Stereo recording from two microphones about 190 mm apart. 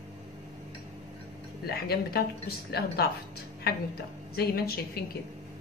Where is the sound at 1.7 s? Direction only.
55° left (ahead or behind).